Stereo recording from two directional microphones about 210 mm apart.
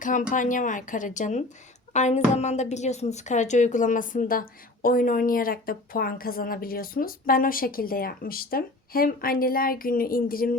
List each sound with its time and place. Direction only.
0.0 s a woman's voice: 40° left (ahead or behind)